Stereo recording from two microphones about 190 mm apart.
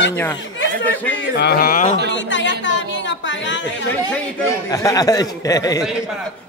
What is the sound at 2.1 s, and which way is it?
Speech, 75° left (ahead or behind).